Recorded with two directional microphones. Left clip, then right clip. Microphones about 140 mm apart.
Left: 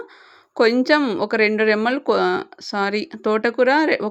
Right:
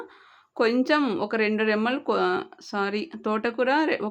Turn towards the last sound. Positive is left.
turn(degrees=35)  # may be behind; listen again after turning